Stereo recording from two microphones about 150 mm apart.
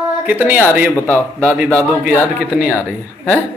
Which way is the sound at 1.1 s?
5° left (ahead or behind).